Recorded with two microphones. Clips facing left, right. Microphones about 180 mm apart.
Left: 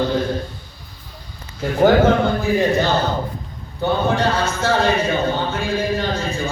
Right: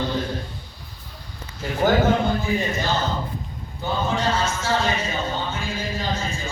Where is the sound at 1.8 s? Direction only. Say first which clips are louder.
Left 5 dB; 65° left (ahead or behind).